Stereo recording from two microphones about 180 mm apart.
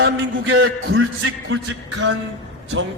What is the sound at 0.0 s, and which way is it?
A man's voice, 90° right.